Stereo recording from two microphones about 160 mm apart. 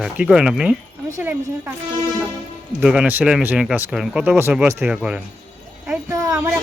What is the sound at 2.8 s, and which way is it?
Speech, 5° right (ahead or behind).